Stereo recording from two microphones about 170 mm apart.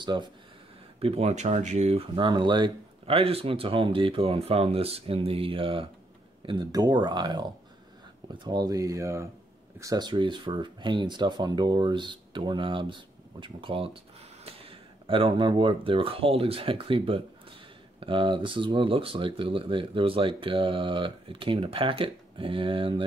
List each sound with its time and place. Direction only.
0.0 s speech: 25° right (ahead or behind)